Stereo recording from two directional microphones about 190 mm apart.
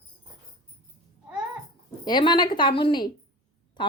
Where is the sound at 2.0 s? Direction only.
25° left (ahead or behind).